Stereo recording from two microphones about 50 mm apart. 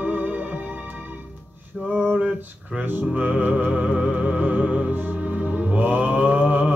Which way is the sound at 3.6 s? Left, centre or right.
Right.